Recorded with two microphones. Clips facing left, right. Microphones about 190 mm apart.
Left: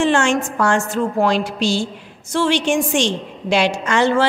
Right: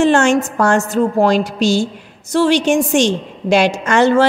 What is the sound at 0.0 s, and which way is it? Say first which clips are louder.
A woman's voice: right 4 dB; 40° right (ahead or behind).